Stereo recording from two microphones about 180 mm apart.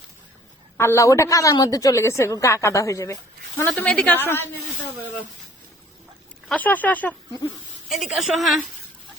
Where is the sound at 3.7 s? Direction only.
5° left (ahead or behind).